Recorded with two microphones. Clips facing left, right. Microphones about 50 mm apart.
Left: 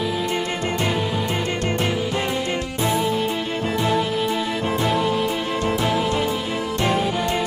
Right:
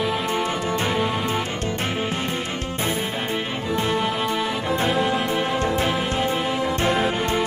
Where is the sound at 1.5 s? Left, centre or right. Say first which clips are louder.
Left 3 dB; left.